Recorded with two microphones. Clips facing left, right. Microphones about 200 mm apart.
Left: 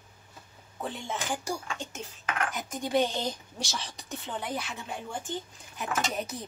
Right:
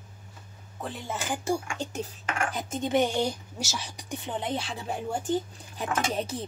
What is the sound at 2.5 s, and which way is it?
A woman's voice, 25° right (ahead or behind).